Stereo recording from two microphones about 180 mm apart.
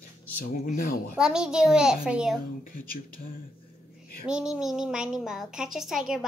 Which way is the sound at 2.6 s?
50° left (ahead or behind).